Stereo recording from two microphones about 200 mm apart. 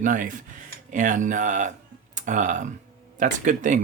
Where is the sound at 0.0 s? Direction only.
40° right (ahead or behind).